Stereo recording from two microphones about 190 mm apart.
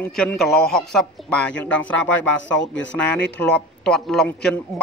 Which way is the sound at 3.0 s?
5° left (ahead or behind).